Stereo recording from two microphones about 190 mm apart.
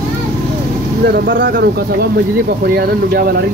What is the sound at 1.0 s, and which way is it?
Speech, 55° right (ahead or behind).